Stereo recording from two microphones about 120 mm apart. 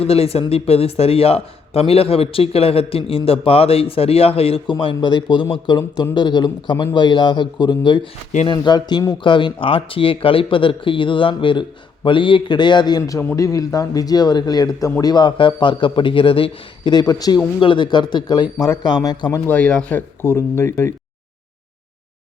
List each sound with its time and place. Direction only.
0.0 s a man's voice: 55° left (ahead or behind); by 13.0 s 40° left (ahead or behind)
13.0 s a man's voice: 25° left (ahead or behind)
17.6 s a man's voice: 45° left (ahead or behind)
19.3 s speech: 15° left (ahead or behind)